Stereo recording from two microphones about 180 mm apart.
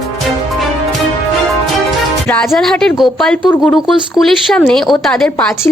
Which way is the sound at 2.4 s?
Centre (ahead or behind).